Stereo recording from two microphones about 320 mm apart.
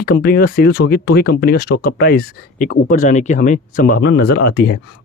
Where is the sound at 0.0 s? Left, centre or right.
Left.